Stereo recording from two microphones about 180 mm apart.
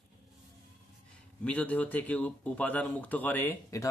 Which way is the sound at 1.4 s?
10° left (ahead or behind).